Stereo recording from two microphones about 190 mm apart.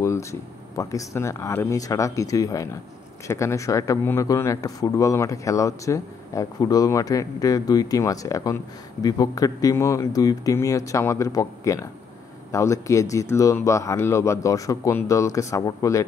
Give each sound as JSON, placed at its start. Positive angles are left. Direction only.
{"t": 0.0, "sound": "speech", "side_deg": 15}